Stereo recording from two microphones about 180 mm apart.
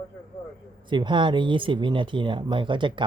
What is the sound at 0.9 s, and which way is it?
Speech, 25° right (ahead or behind).